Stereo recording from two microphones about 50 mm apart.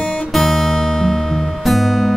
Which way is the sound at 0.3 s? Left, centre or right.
Centre.